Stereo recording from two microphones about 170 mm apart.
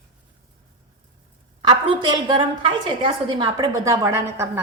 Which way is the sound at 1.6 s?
25° right (ahead or behind).